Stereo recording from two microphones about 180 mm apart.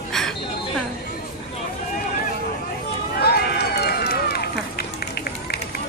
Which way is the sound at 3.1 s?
60° left (ahead or behind).